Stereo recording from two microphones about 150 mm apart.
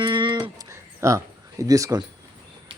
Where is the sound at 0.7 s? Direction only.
20° right (ahead or behind).